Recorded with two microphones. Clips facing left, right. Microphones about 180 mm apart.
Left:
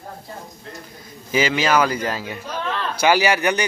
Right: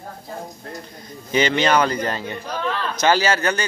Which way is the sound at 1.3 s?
5° left (ahead or behind).